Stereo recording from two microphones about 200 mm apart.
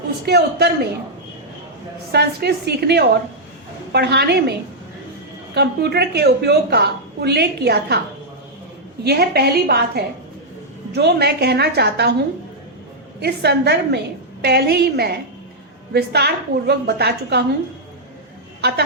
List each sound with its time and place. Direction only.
0.3 s a woman's voice: 55° right (ahead or behind)
2.1 s a woman's voice: 55° right (ahead or behind)
5.5 s a woman's voice: 55° right (ahead or behind)
9.0 s a woman's voice: 55° right (ahead or behind)
13.2 s a woman's voice: 55° right (ahead or behind)